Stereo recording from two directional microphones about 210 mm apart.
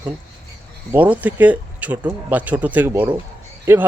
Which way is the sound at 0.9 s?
5° right (ahead or behind).